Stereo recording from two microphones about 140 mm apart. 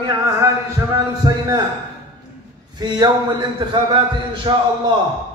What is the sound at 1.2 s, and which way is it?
Speech, 30° right (ahead or behind).